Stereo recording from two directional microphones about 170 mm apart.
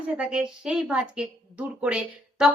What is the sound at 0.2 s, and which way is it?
A woman's voice, 5° right (ahead or behind).